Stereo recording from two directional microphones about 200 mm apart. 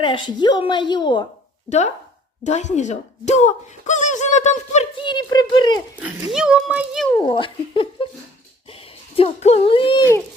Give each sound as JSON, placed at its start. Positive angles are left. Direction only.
{"t": 0.0, "sound": "a woman's voice", "side_deg": 25}
{"t": 2.4, "sound": "speech", "side_deg": 35}
{"t": 5.0, "sound": "speech", "side_deg": 20}
{"t": 6.0, "sound": "speech", "side_deg": -5}
{"t": 7.1, "sound": "a woman's voice", "side_deg": 25}
{"t": 9.1, "sound": "a woman's voice", "side_deg": 30}